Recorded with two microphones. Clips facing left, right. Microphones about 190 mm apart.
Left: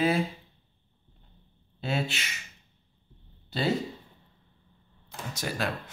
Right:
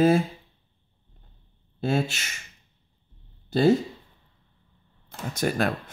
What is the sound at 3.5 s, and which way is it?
Speech, 45° right (ahead or behind).